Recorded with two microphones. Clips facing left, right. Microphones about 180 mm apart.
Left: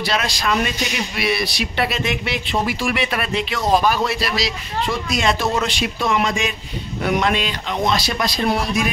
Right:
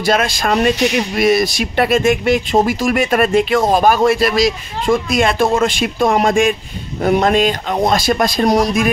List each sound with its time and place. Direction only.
0.0 s speech: 50° right (ahead or behind)